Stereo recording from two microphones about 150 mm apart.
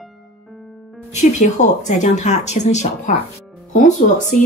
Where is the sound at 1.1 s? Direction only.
50° left (ahead or behind).